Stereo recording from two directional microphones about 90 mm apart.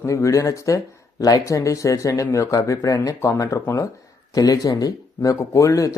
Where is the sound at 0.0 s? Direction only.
35° left (ahead or behind).